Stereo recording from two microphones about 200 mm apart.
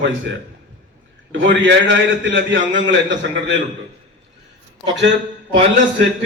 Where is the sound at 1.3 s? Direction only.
65° right (ahead or behind).